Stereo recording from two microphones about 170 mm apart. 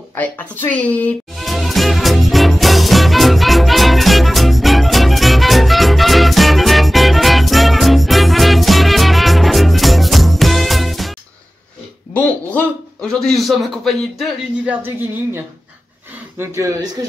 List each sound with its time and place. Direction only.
0.7 s music: 10° left (ahead or behind)
12.1 s a sound: 10° left (ahead or behind)
13.1 s speech: centre (ahead or behind)
16.3 s speech: 15° right (ahead or behind)